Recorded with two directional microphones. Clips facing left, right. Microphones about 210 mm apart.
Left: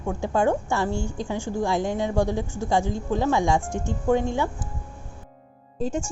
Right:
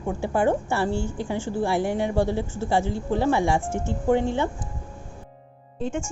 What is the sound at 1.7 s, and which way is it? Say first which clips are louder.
Speech: right 1 dB; 10° right (ahead or behind).